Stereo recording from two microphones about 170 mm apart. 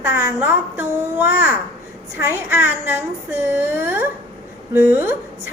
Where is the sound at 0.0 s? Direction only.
15° right (ahead or behind).